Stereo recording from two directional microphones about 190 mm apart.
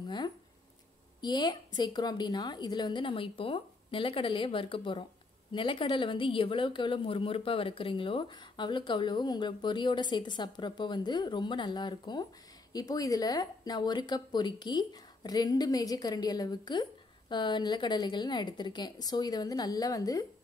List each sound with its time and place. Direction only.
1.2 s a woman's voice: 20° left (ahead or behind)